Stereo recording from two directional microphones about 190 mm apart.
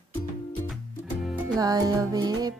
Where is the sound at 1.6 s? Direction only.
20° right (ahead or behind).